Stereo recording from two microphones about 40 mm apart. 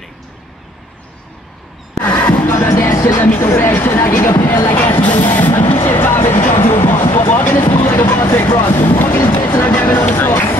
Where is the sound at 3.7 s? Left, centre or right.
Left.